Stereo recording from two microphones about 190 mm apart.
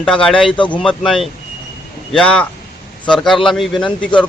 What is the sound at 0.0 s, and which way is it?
Speech, 5° left (ahead or behind).